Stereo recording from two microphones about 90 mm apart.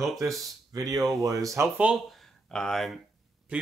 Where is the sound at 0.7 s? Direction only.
45° right (ahead or behind).